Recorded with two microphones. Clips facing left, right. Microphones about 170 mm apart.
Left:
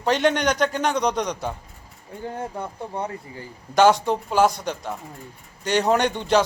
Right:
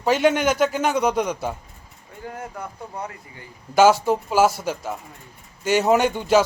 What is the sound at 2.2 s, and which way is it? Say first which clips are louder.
Speech: left 3 dB; 30° left (ahead or behind).